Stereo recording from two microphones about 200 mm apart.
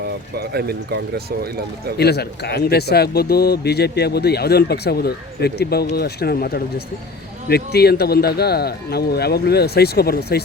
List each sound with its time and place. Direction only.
0.3 s speech: 55° right (ahead or behind)
2.0 s a man's voice: 55° left (ahead or behind)